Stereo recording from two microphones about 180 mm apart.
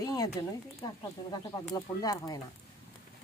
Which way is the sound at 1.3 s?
20° left (ahead or behind).